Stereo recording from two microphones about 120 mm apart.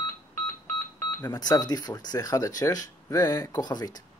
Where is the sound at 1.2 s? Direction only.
35° left (ahead or behind).